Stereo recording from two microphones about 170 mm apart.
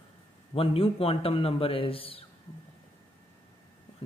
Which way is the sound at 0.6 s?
35° left (ahead or behind).